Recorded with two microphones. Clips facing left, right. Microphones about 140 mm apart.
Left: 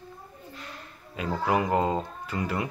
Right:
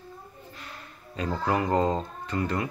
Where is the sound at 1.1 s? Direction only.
10° left (ahead or behind).